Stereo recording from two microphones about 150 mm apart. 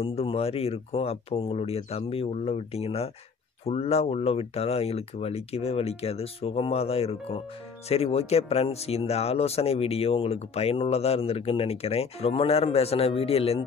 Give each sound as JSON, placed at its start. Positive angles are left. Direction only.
{"t": 0.0, "sound": "speech", "side_deg": 40}